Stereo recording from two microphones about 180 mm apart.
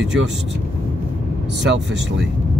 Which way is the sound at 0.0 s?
80° right.